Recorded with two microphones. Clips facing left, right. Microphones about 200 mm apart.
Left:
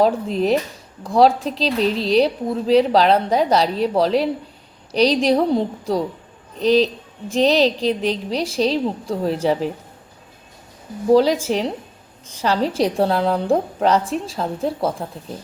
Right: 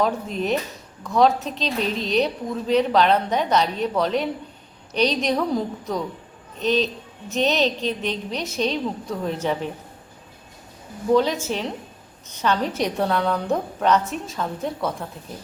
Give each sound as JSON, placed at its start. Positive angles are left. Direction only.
{"t": 0.0, "sound": "a woman's voice", "side_deg": 35}
{"t": 11.1, "sound": "a woman's voice", "side_deg": 35}